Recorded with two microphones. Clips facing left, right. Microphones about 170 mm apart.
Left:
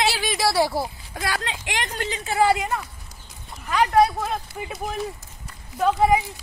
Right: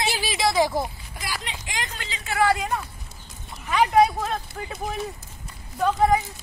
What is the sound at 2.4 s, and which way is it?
Speech, 10° left (ahead or behind).